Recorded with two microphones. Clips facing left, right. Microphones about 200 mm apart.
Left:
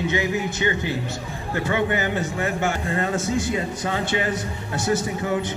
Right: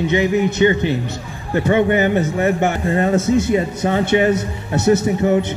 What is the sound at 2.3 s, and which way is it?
A man's voice, 30° right (ahead or behind).